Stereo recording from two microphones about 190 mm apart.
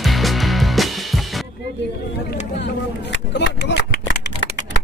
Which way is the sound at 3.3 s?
65° left (ahead or behind).